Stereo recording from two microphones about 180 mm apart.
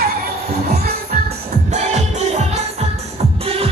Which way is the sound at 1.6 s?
40° right (ahead or behind).